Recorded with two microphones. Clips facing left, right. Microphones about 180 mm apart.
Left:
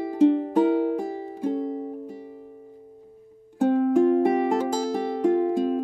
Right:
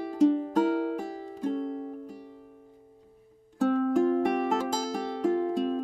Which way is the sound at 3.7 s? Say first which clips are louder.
Left 6 dB; 15° left (ahead or behind).